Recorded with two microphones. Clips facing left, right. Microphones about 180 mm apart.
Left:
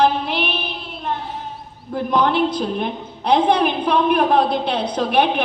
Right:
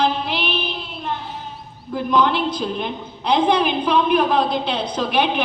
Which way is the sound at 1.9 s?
55° left (ahead or behind).